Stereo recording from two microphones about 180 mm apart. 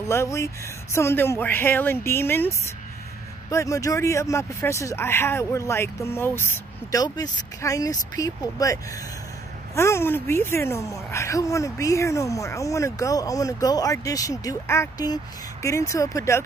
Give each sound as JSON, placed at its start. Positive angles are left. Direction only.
{"t": 0.1, "sound": "a woman's voice", "side_deg": 15}
{"t": 9.8, "sound": "a woman's voice", "side_deg": 15}